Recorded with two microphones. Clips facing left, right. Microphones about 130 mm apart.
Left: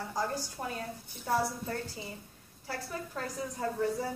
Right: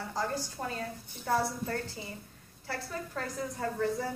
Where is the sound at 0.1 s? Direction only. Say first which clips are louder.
Right 1 dB; 15° left (ahead or behind).